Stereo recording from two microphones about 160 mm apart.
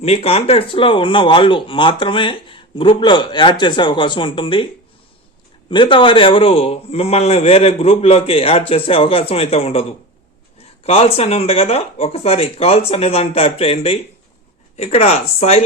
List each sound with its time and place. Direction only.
0.0 s speech: 40° left (ahead or behind)
10.8 s speech: 40° left (ahead or behind)